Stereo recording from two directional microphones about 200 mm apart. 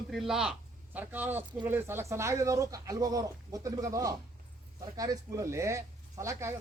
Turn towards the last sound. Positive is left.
turn(degrees=-15)  # may be behind; listen again after turning